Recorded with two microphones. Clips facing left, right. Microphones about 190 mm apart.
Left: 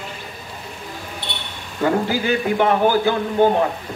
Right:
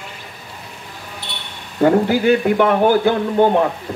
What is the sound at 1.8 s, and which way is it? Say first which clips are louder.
Speech: right 5 dB; 55° right (ahead or behind).